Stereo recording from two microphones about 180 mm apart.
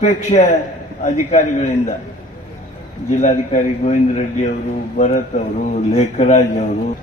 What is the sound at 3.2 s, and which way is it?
A man's voice, 40° left (ahead or behind).